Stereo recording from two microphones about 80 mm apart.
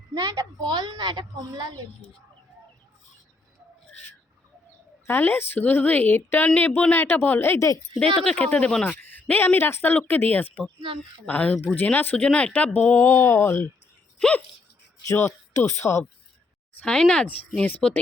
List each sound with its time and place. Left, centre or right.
0.1 s a child's voice: right
5.0 s speech: left
7.9 s speech: centre; by 13.7 s left
14.2 s speech: centre
15.0 s speech: left
16.8 s speech: centre